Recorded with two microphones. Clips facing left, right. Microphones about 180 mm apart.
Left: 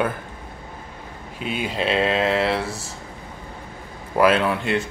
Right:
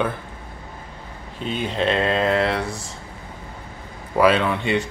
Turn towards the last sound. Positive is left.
turn(degrees=0)  # may be behind; listen again after turning